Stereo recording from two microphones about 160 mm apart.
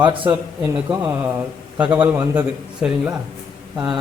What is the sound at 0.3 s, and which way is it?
Speech, 15° right (ahead or behind).